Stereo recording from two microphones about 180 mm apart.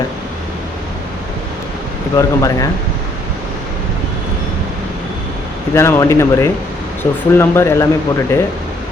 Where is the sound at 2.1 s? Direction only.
20° left (ahead or behind).